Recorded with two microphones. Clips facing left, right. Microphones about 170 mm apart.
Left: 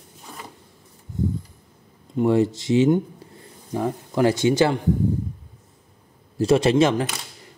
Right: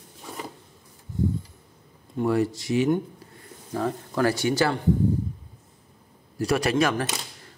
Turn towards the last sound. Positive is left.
turn(degrees=25)  # may be behind; listen again after turning